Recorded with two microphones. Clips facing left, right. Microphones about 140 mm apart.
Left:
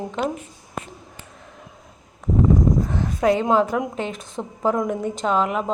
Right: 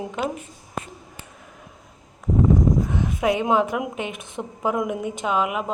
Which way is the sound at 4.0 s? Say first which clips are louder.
Left 2 dB; 15° right (ahead or behind).